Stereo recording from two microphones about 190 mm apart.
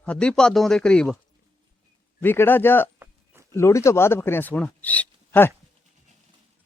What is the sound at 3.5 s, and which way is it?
Speech, 15° left (ahead or behind).